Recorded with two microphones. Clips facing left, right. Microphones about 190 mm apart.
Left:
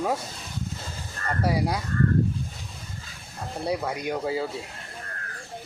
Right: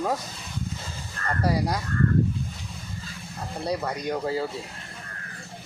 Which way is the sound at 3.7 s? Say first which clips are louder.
Even; 5° left (ahead or behind).